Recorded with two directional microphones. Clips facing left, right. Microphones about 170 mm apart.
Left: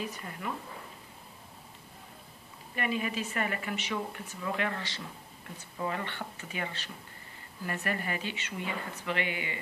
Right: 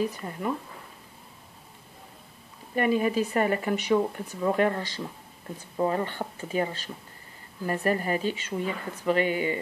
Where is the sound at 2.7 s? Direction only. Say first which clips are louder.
Right 9 dB; 40° right (ahead or behind).